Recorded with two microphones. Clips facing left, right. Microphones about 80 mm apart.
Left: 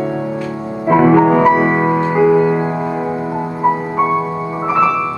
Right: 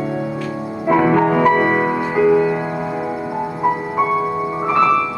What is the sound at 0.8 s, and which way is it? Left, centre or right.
Music, centre.